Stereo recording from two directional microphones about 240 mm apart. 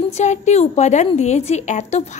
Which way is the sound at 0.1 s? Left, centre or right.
Left.